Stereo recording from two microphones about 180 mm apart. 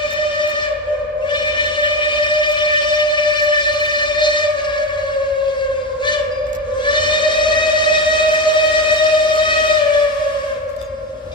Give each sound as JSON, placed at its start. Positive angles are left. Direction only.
{"t": 1.3, "sound": "train", "side_deg": 25}
{"t": 6.8, "sound": "train", "side_deg": 25}